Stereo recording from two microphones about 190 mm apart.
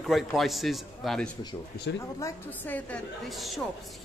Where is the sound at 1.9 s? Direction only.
70° left (ahead or behind).